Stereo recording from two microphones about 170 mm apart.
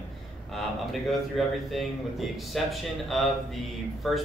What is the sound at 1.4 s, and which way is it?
Speech, centre (ahead or behind).